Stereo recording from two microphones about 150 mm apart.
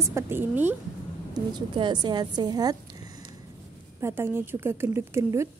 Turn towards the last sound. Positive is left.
turn(degrees=-20)  # may be behind; listen again after turning